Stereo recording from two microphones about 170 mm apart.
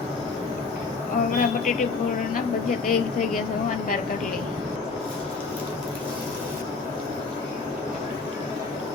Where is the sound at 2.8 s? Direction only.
55° left (ahead or behind).